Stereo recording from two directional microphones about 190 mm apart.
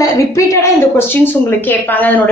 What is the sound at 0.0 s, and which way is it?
A woman's voice, 15° left (ahead or behind).